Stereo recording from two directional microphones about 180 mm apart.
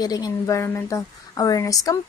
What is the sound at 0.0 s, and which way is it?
A woman's voice, 20° left (ahead or behind).